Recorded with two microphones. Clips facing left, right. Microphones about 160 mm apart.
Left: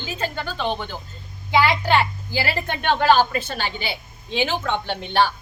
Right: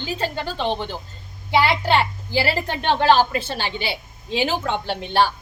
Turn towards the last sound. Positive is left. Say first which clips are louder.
# right 1 dB
turn(degrees=-35)  # may be behind; listen again after turning